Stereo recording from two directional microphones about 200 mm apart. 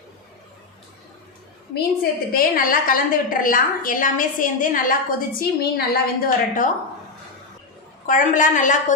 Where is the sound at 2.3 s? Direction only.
45° left (ahead or behind).